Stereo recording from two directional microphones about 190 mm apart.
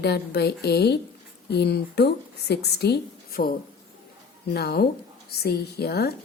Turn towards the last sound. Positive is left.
turn(degrees=55)  # may be behind; listen again after turning